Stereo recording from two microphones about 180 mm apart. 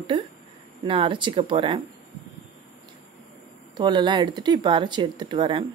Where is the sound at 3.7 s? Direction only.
25° right (ahead or behind).